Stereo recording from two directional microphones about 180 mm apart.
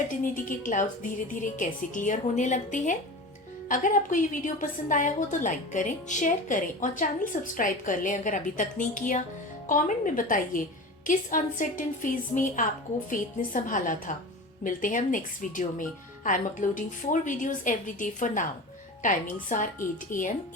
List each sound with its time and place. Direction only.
0.3 s a woman's voice: 50° left (ahead or behind)